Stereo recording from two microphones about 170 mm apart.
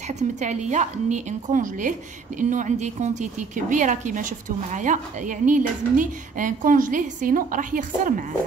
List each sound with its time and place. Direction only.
0.2 s a woman's voice: 45° right (ahead or behind)